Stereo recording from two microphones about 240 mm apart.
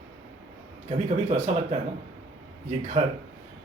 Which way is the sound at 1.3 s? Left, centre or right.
Right.